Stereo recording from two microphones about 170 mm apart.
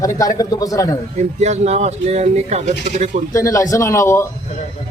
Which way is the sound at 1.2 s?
40° right (ahead or behind).